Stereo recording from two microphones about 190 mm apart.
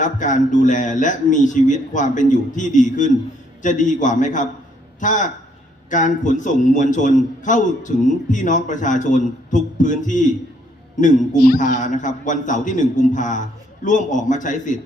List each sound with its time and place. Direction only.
0.0 s a man's voice: 40° left (ahead or behind)